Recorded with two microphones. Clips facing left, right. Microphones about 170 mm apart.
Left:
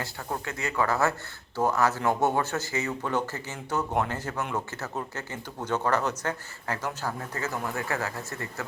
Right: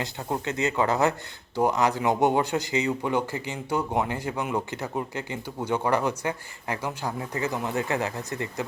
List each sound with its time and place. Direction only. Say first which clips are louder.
0.0 s speech: right 4 dB; 20° right (ahead or behind)